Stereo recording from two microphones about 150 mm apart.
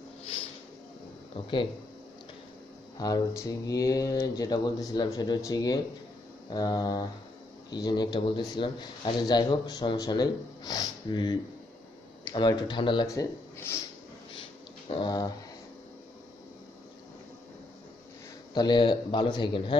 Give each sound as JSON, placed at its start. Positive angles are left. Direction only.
{"t": 3.0, "sound": "speech", "side_deg": 25}
{"t": 15.0, "sound": "speech", "side_deg": 25}
{"t": 18.5, "sound": "speech", "side_deg": 30}